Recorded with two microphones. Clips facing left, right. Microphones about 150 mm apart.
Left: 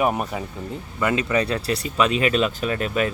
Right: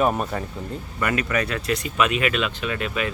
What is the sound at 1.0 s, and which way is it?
Speech, 25° left (ahead or behind).